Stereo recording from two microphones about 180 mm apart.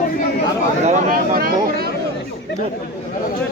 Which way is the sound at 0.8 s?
50° right (ahead or behind).